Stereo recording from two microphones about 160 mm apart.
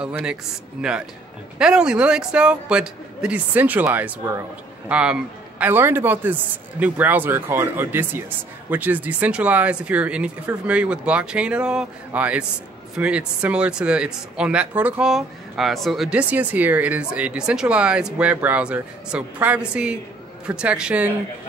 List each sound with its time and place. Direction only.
0.0 s a man's voice: 5° right (ahead or behind)